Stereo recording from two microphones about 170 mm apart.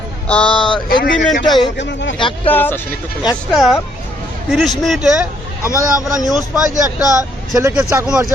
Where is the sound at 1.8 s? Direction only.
90° left.